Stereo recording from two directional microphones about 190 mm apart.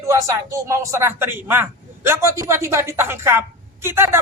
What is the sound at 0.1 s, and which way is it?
A man's voice, 15° right (ahead or behind).